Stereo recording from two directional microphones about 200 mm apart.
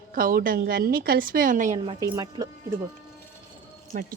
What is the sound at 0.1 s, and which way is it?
Speech, 45° right (ahead or behind).